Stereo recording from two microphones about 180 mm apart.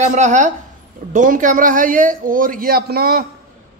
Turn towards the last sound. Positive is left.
turn(degrees=-55)  # may be behind; listen again after turning